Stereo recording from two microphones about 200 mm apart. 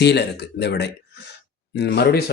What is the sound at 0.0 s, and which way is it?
Speech, 55° left (ahead or behind).